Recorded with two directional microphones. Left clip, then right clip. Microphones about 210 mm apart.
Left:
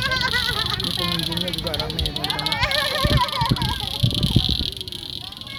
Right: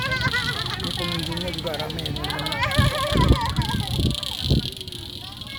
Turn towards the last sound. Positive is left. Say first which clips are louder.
# left 4 dB
turn(degrees=20)  # may be behind; listen again after turning